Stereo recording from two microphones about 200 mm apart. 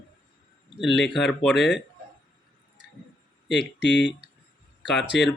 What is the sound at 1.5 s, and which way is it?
Speech, 60° left (ahead or behind).